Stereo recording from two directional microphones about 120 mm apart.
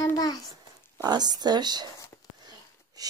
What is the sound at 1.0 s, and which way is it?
Speech, 35° right (ahead or behind).